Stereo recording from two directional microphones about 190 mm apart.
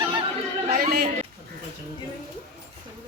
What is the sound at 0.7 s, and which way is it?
Chatter, 50° right (ahead or behind).